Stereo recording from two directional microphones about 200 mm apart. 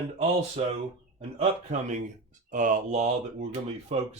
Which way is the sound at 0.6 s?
30° right (ahead or behind).